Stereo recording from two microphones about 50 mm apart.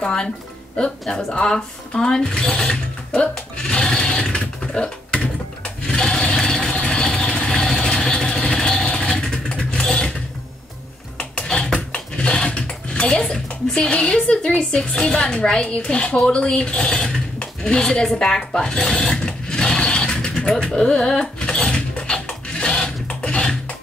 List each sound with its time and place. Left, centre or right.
0.0 s speech: centre
1.1 s mechanisms: centre
6.3 s vehicle: centre
11.1 s a sound: centre
13.8 s a woman's voice: centre
19.8 s sewing machine: centre